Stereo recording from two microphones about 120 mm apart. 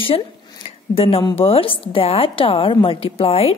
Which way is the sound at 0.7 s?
50° left (ahead or behind).